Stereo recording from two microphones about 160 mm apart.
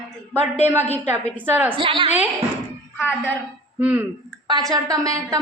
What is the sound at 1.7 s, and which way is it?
Speech, 35° right (ahead or behind).